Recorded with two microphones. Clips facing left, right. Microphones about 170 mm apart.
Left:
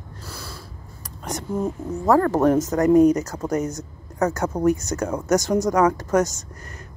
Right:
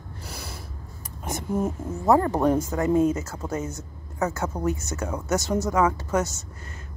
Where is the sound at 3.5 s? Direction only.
25° right (ahead or behind).